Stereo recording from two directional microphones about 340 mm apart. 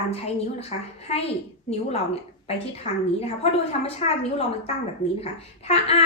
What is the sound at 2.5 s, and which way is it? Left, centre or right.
A woman's voice, centre.